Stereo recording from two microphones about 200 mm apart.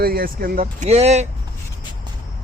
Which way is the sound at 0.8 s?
30° right (ahead or behind).